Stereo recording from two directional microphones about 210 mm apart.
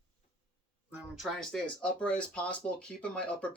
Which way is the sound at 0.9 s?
5° right (ahead or behind).